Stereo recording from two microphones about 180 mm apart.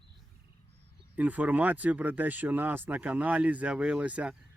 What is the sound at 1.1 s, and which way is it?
Speech, 10° right (ahead or behind).